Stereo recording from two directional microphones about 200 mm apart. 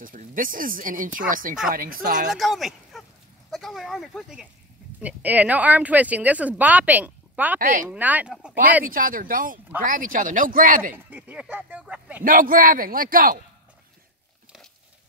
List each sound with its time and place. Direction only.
0.0 s speech: 40° right (ahead or behind)
2.3 s speech: centre (ahead or behind)
8.8 s speech: 45° right (ahead or behind)
11.1 s speech: 5° right (ahead or behind)
12.2 s speech: 45° right (ahead or behind)